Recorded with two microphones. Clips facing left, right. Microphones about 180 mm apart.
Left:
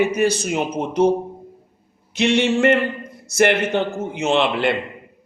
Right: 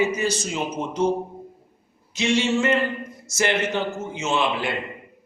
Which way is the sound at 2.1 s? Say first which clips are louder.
Left 4 dB; 60° left (ahead or behind).